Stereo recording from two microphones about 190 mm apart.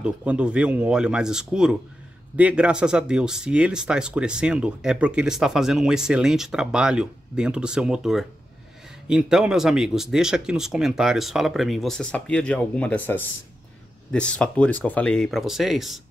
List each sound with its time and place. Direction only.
0.0 s speech: 5° right (ahead or behind)